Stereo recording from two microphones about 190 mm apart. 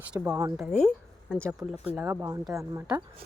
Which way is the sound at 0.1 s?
15° right (ahead or behind).